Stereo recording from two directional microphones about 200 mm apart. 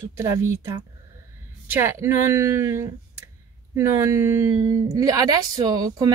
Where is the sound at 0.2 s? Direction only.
15° right (ahead or behind).